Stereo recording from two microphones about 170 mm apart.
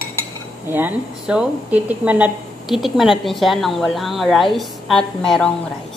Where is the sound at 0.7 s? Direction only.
10° right (ahead or behind).